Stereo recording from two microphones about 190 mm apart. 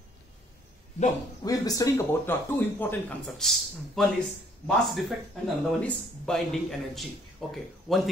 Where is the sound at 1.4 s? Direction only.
20° left (ahead or behind).